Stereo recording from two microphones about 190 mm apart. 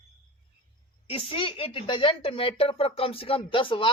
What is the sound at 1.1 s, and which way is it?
Speech, 30° left (ahead or behind).